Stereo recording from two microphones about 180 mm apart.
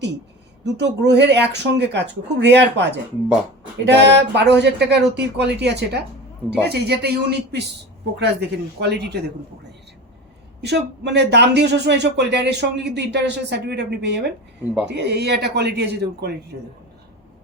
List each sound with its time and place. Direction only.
0.6 s speech: 70° right (ahead or behind)
10.6 s speech: 70° right (ahead or behind)